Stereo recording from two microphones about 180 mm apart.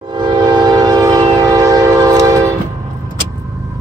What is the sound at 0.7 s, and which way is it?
Train, 20° right (ahead or behind).